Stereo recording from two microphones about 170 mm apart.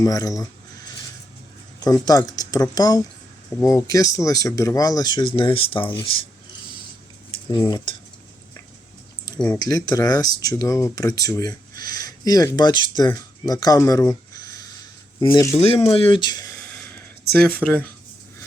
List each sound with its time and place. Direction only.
0.0 s speech: 20° left (ahead or behind)
1.8 s speech: 20° left (ahead or behind)
7.3 s cutlery: 25° left (ahead or behind)
9.4 s speech: 15° left (ahead or behind)
15.5 s speech: 35° left (ahead or behind)
17.5 s speech: 10° left (ahead or behind)